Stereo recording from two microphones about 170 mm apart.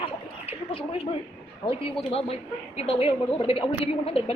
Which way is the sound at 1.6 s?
20° left (ahead or behind).